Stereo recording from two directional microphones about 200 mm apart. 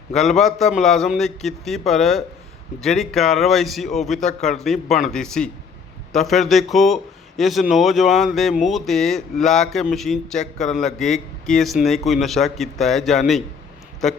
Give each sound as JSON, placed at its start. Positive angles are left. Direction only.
{"t": 0.1, "sound": "a man's voice", "side_deg": 0}